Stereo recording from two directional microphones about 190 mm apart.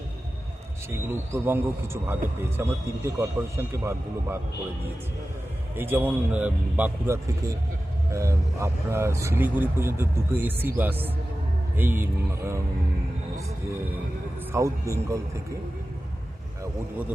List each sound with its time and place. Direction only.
0.9 s speech: 10° right (ahead or behind)
5.7 s speech: 10° right (ahead or behind)
14.5 s speech: 15° right (ahead or behind)